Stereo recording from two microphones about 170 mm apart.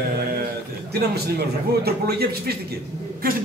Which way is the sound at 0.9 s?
70° right (ahead or behind).